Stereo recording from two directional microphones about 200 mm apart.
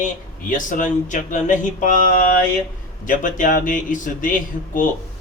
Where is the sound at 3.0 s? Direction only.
40° left (ahead or behind).